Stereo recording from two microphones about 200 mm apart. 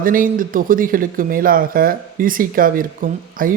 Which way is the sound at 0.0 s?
45° right (ahead or behind).